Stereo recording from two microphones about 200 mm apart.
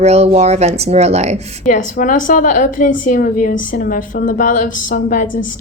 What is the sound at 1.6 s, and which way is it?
A woman's voice, 40° left (ahead or behind).